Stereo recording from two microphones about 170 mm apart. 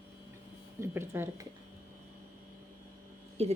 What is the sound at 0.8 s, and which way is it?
Speech, 15° right (ahead or behind).